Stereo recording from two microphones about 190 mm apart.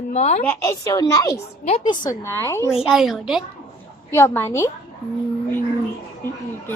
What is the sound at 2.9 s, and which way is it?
Speech, centre (ahead or behind).